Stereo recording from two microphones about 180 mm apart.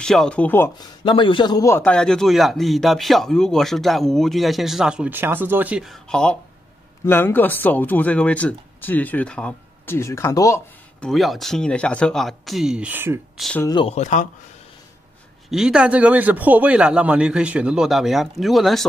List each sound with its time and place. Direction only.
0.0 s speech: 5° left (ahead or behind)
0.7 s a man's voice: 25° left (ahead or behind)
11.0 s a man's voice: centre (ahead or behind)
13.4 s a man's voice: 5° left (ahead or behind)
13.7 s speech: 25° left (ahead or behind)
13.9 s speech: 40° left (ahead or behind)
15.5 s a man's voice: 5° right (ahead or behind)